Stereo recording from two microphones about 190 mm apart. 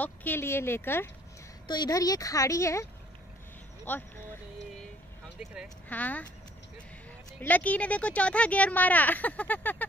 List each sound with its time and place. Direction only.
0.0 s speech: 10° left (ahead or behind)
3.8 s a sound: 10° left (ahead or behind)
5.4 s speech: 5° right (ahead or behind)
5.9 s speech: 10° left (ahead or behind)
7.3 s speech: 10° left (ahead or behind)